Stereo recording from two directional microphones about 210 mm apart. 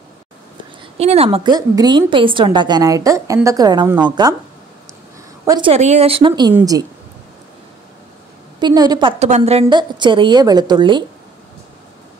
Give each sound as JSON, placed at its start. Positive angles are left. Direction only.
{"t": 0.9, "sound": "a woman's voice", "side_deg": -30}
{"t": 5.4, "sound": "a woman's voice", "side_deg": -15}
{"t": 5.7, "sound": "a woman's voice", "side_deg": -30}
{"t": 8.5, "sound": "a woman's voice", "side_deg": -20}
{"t": 9.2, "sound": "a woman's voice", "side_deg": -30}